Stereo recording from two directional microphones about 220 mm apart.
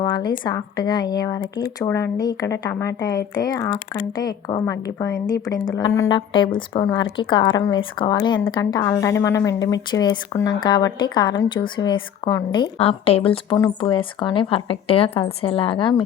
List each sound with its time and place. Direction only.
0.0 s a woman's voice: 20° left (ahead or behind)